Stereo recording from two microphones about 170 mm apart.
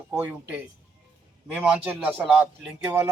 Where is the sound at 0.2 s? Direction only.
10° right (ahead or behind).